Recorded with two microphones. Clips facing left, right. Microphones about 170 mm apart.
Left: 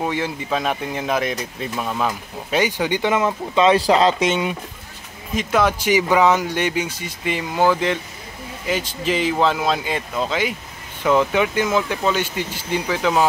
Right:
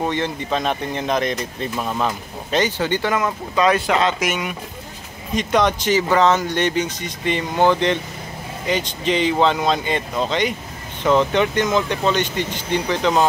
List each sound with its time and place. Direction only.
0.0 s speech: 5° left (ahead or behind); by 4.6 s 25° left (ahead or behind)
5.3 s speech: 5° left (ahead or behind)